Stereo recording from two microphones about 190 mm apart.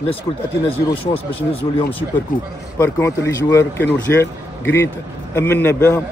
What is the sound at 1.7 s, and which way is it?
Speech, 20° left (ahead or behind).